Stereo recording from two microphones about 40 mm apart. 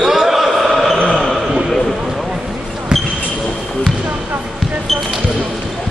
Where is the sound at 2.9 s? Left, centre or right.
Centre.